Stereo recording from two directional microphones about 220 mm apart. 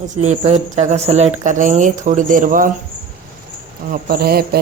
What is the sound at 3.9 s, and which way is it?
Speech, 45° right (ahead or behind).